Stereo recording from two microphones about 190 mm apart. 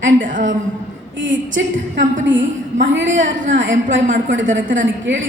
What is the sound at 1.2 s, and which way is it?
A woman's voice, 75° right (ahead or behind).